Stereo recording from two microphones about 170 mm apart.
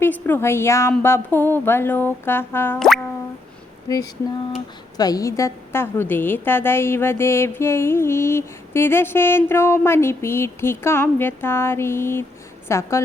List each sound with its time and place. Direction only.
0.0 s a woman's voice: 10° left (ahead or behind)
2.7 s music: centre (ahead or behind)
3.8 s a sound: 20° left (ahead or behind)
4.9 s a woman's voice: 20° left (ahead or behind)